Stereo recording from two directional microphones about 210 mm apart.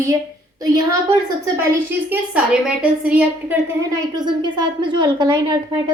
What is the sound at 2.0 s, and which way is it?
A woman's voice, 5° right (ahead or behind).